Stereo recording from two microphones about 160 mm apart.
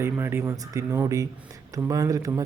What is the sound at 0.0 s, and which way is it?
Speech, 15° right (ahead or behind).